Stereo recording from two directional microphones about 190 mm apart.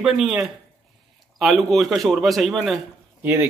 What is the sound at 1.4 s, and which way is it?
Speech, centre (ahead or behind).